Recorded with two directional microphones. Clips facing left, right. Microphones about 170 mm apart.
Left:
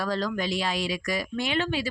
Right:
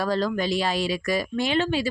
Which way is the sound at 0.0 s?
35° right (ahead or behind).